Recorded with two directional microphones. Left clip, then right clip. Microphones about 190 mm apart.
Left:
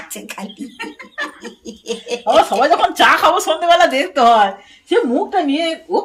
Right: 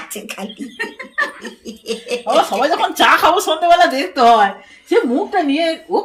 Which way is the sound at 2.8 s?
15° right (ahead or behind).